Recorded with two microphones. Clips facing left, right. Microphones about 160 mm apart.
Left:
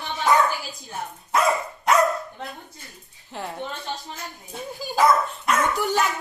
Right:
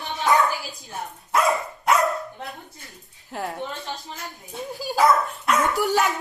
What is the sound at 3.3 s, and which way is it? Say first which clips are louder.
Speech: right 3 dB; 5° right (ahead or behind).